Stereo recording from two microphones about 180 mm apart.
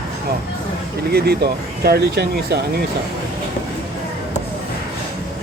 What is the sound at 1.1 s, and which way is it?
Speech, 60° right (ahead or behind).